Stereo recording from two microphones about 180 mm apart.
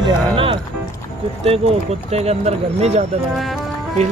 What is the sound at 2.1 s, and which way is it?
Speech, 35° right (ahead or behind).